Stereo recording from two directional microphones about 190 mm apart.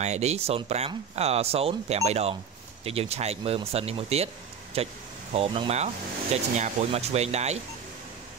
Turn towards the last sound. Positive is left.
turn(degrees=-35)  # may be behind; listen again after turning